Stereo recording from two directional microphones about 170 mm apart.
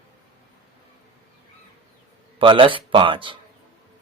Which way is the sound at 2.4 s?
30° right (ahead or behind).